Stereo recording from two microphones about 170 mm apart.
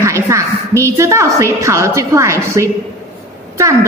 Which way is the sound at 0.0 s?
15° right (ahead or behind).